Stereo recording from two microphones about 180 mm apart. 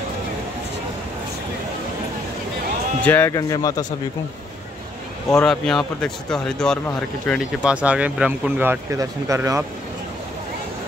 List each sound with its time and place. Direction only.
3.1 s speech: 15° left (ahead or behind)
5.3 s speech: 5° left (ahead or behind); by 9.7 s 15° right (ahead or behind)